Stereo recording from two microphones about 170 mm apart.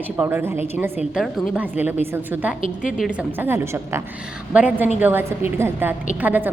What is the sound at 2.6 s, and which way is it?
Speech, 50° left (ahead or behind).